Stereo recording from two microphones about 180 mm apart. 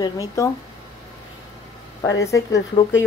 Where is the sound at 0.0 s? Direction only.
20° left (ahead or behind).